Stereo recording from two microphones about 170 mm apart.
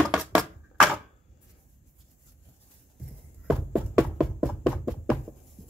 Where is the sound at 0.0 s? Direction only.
5° right (ahead or behind).